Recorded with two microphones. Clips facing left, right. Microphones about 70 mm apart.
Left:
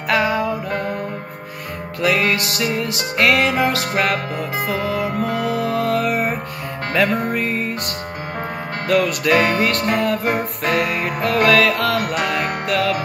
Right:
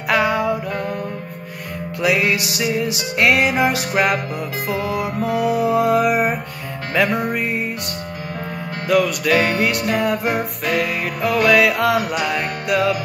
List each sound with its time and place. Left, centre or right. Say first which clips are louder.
0.1 s music: right 1 dB; centre
0.7 s music: left 1 dB; left
2.0 s music: even; centre
4.6 s music: right 1 dB; left
5.4 s music: right 6 dB; centre
8.8 s music: right 1 dB; centre
9.3 s music: left 2 dB; left
9.6 s music: left 1 dB; centre
10.2 s music: left 1 dB; left
11.5 s music: right 1 dB; centre